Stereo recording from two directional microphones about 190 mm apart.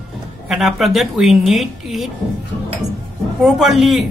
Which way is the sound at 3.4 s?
Centre (ahead or behind).